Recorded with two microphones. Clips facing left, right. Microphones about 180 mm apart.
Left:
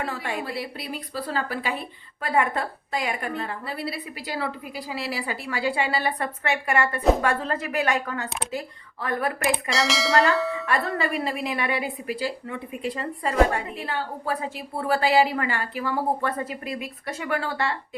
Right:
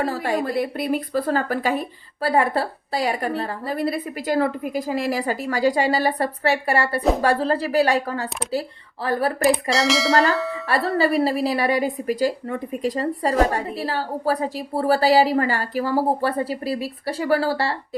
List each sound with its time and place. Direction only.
0.0 s a woman's voice: 40° right (ahead or behind)
9.6 s speech: centre (ahead or behind)
10.7 s a woman's voice: 35° right (ahead or behind)